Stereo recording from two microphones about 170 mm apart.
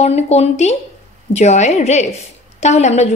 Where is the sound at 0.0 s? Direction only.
40° left (ahead or behind).